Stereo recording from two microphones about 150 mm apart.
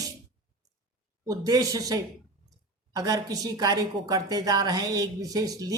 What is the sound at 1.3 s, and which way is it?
A woman's voice, 25° right (ahead or behind).